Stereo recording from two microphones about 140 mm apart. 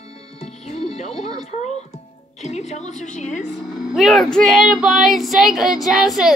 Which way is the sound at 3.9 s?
Centre (ahead or behind).